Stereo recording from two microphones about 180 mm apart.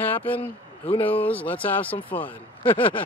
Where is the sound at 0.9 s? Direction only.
30° left (ahead or behind).